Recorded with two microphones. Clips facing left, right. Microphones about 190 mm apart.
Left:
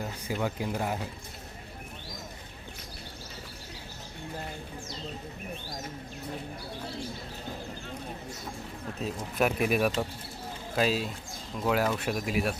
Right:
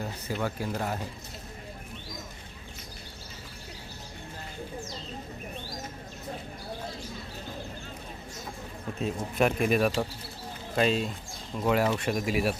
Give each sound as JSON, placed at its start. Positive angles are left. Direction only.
{"t": 0.3, "sound": "speech", "side_deg": 15}
{"t": 9.0, "sound": "speech", "side_deg": 0}